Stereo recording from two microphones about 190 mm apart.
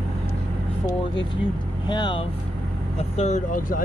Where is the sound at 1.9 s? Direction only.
25° left (ahead or behind); by 3.8 s 45° left (ahead or behind).